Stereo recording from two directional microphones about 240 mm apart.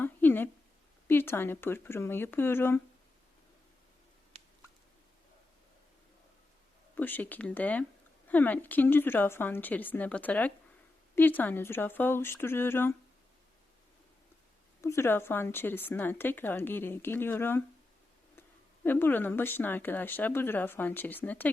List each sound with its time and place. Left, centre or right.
0.0 s a sound: centre
1.0 s speech: centre
6.9 s speech: centre
14.8 s speech: centre